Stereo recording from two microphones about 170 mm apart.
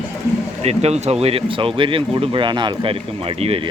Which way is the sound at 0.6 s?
40° right (ahead or behind).